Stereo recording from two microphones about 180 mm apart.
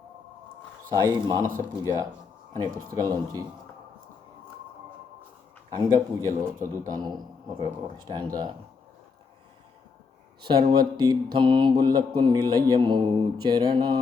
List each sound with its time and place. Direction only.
0.9 s mantra: 20° right (ahead or behind)
1.5 s speech: 15° right (ahead or behind)
2.9 s mantra: 20° right (ahead or behind)
5.7 s mantra: 20° right (ahead or behind)
10.4 s mantra: 25° right (ahead or behind)